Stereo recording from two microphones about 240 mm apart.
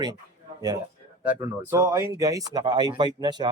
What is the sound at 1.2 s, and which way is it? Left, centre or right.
Speech, centre.